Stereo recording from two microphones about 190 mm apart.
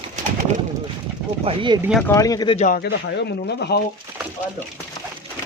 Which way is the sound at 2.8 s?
60° left (ahead or behind).